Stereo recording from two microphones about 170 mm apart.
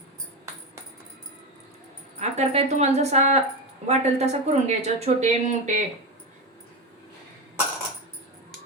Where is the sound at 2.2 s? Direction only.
40° right (ahead or behind).